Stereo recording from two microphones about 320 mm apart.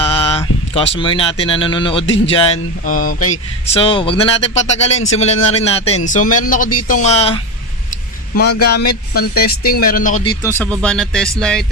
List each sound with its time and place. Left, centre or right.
0.0 s speech: centre
2.0 s speech: left
2.3 s speech: centre
3.2 s speech: left
3.8 s speech: centre
8.4 s speech: left
9.1 s speech: left
10.4 s speech: centre